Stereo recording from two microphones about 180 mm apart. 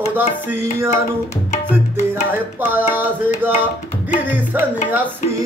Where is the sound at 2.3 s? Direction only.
10° right (ahead or behind).